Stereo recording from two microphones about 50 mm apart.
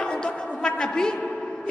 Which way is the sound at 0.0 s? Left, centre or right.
Centre.